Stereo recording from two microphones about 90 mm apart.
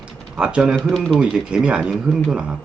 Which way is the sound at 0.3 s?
10° right (ahead or behind).